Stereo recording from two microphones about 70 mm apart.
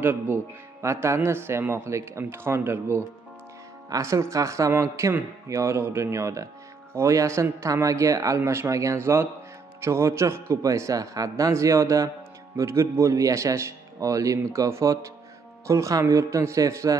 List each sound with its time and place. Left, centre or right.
0.0 s a man's voice: right
8.4 s a man's voice: right